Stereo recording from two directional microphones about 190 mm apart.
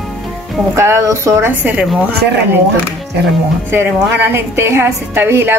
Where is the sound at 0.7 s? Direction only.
15° right (ahead or behind).